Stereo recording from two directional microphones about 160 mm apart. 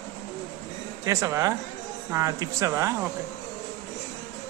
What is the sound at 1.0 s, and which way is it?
Speech, 20° right (ahead or behind).